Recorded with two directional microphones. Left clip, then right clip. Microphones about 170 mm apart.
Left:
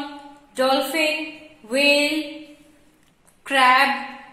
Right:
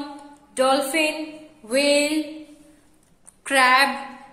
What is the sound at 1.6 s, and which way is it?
Speech, 25° right (ahead or behind).